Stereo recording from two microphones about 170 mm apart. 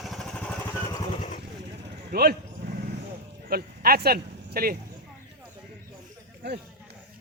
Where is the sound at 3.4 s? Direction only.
60° right (ahead or behind).